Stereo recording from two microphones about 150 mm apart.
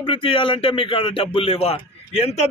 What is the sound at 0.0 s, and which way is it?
Speech, 35° left (ahead or behind).